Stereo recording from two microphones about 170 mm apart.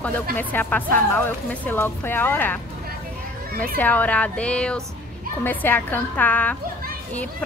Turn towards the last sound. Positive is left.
turn(degrees=10)  # may be behind; listen again after turning